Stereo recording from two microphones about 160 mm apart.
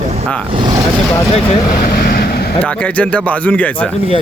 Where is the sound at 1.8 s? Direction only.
75° left (ahead or behind).